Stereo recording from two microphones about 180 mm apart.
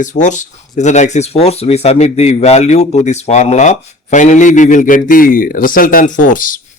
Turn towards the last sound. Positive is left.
turn(degrees=45)  # may be behind; listen again after turning